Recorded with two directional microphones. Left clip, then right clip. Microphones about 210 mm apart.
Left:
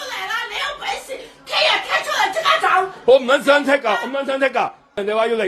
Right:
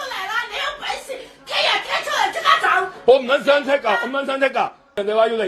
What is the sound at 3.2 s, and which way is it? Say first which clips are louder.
A man's voice: left 2 dB; 20° left (ahead or behind).